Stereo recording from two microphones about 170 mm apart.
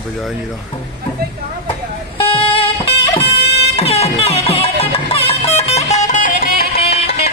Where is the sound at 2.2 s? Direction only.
30° left (ahead or behind).